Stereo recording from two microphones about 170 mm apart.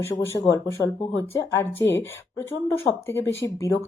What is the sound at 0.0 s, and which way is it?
Speech, 15° left (ahead or behind).